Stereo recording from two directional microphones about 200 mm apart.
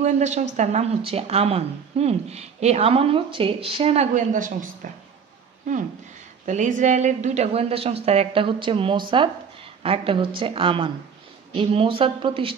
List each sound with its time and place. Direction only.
0.0 s speech: 35° right (ahead or behind)
6.4 s speech: 40° right (ahead or behind)